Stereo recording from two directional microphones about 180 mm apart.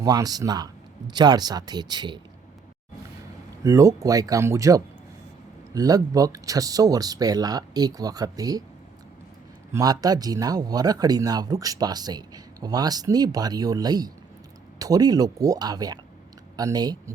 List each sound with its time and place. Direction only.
0.0 s speech: 20° right (ahead or behind)
3.6 s speech: 20° right (ahead or behind)
9.7 s speech: 20° right (ahead or behind)